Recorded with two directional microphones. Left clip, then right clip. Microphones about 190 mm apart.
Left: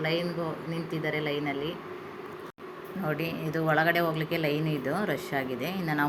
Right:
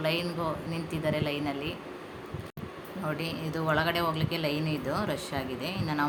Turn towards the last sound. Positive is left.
turn(degrees=10)  # may be behind; listen again after turning